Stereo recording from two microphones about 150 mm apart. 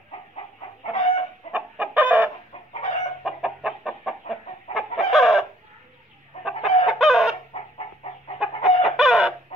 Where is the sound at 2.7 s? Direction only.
50° left (ahead or behind).